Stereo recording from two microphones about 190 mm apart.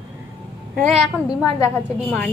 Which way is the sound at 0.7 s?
Centre (ahead or behind).